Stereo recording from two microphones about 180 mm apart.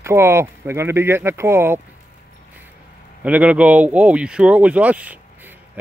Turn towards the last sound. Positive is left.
turn(degrees=-10)  # may be behind; listen again after turning